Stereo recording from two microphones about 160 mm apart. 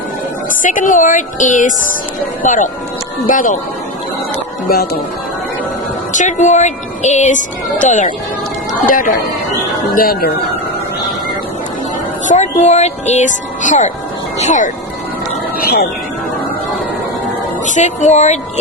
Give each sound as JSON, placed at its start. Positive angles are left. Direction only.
{"t": 0.6, "sound": "a woman's voice", "side_deg": 55}
{"t": 6.1, "sound": "a woman's voice", "side_deg": 50}
{"t": 12.3, "sound": "a woman's voice", "side_deg": 45}
{"t": 15.5, "sound": "speech", "side_deg": 75}
{"t": 17.7, "sound": "a woman's voice", "side_deg": 50}